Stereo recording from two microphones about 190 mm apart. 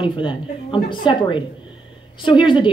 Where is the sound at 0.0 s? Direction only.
25° left (ahead or behind).